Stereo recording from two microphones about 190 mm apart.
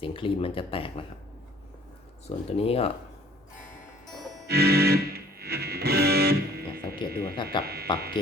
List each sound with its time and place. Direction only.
0.0 s speech: 30° left (ahead or behind)
2.2 s speech: 35° left (ahead or behind)
4.4 s music: 55° right (ahead or behind)
7.6 s speech: 55° right (ahead or behind)